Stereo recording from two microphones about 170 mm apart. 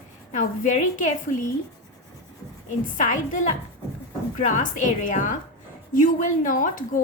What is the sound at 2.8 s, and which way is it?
Speech, 50° left (ahead or behind).